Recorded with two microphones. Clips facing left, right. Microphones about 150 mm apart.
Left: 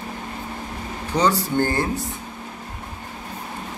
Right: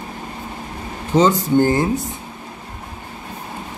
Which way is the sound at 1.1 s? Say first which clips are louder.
Right 6 dB; 20° right (ahead or behind).